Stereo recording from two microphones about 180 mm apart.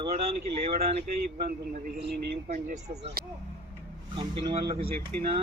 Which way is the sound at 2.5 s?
40° right (ahead or behind).